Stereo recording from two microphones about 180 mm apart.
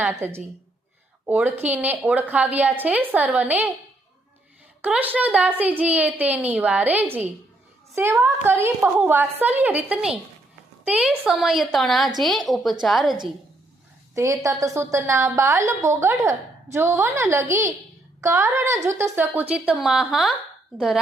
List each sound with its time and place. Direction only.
0.0 s a woman's voice: 10° right (ahead or behind)
4.8 s a woman's voice: 10° right (ahead or behind)
14.2 s a woman's voice: 15° right (ahead or behind)